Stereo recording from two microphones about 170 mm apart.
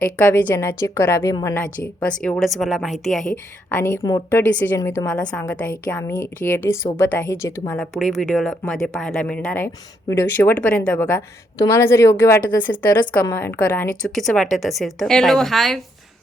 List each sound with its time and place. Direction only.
0.0 s a woman's voice: 10° left (ahead or behind)
2.0 s a woman's voice: 10° left (ahead or behind)
7.8 s a woman's voice: centre (ahead or behind)
11.0 s a woman's voice: 20° left (ahead or behind); by 15.8 s centre (ahead or behind)